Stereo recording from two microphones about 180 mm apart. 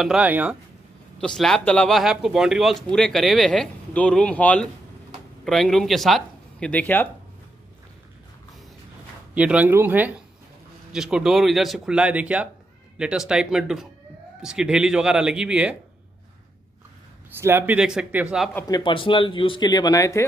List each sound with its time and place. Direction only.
0.0 s speech: 5° right (ahead or behind)
1.2 s speech: 5° left (ahead or behind)
9.3 s speech: 5° right (ahead or behind)
17.4 s speech: 15° right (ahead or behind)
18.7 s speech: 25° left (ahead or behind)